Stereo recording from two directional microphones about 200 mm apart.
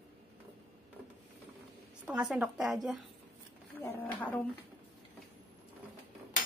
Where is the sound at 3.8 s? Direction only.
10° left (ahead or behind).